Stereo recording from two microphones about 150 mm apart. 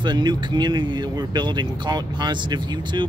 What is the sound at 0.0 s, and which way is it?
Speech, 30° right (ahead or behind).